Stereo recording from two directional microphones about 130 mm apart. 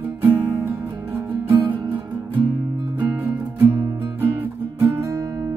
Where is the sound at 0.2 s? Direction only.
20° right (ahead or behind).